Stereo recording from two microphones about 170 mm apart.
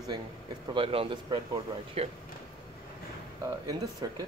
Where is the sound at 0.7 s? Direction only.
30° right (ahead or behind).